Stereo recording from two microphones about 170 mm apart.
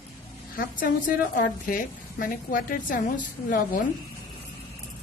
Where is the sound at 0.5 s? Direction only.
55° left (ahead or behind).